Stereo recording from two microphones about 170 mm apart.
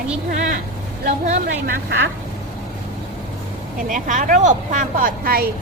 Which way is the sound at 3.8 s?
50° right (ahead or behind).